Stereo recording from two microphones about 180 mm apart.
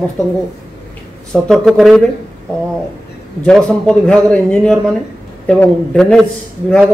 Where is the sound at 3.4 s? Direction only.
5° left (ahead or behind).